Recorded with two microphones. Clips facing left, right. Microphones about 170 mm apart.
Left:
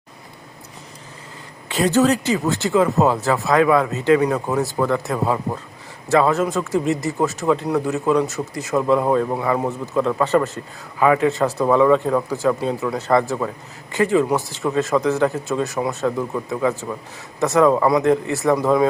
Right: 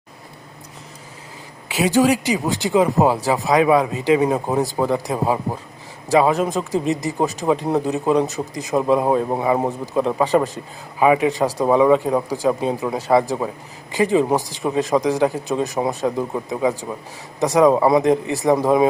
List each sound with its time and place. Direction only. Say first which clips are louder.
1.6 s speech: even; 10° right (ahead or behind)